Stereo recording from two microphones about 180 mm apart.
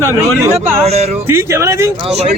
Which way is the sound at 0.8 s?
35° right (ahead or behind).